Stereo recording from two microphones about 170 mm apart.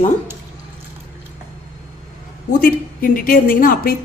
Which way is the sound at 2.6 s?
55° left (ahead or behind).